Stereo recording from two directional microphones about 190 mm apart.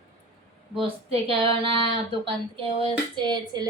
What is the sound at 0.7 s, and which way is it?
Speech, 30° right (ahead or behind).